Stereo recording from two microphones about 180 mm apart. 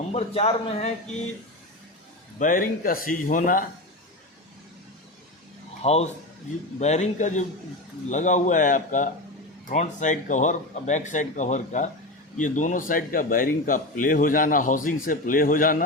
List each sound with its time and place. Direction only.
0.1 s a man's voice: 35° left (ahead or behind)
2.4 s speech: 50° left (ahead or behind)
5.8 s a man's voice: 35° left (ahead or behind)